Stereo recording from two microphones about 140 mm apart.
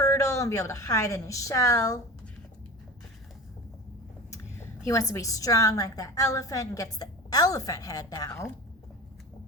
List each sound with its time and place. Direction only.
0.0 s a woman's voice: 20° left (ahead or behind)
4.9 s a woman's voice: 20° left (ahead or behind)